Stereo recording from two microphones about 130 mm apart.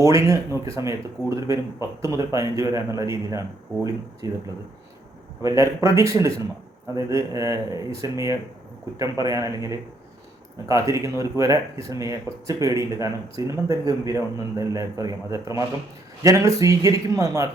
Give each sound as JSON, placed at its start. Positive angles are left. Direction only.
{"t": 0.0, "sound": "speech", "side_deg": -25}
{"t": 2.0, "sound": "speech", "side_deg": -25}
{"t": 5.4, "sound": "speech", "side_deg": -25}